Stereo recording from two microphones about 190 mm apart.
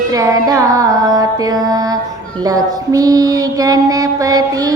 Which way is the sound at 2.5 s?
20° right (ahead or behind).